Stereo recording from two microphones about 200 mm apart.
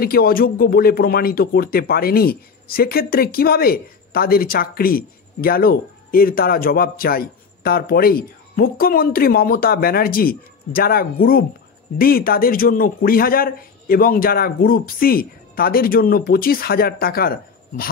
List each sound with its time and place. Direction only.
0.0 s speech: 50° left (ahead or behind)